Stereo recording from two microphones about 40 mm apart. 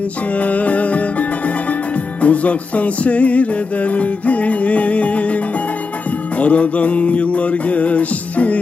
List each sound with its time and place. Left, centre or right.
0.4 s music: left
2.2 s music: left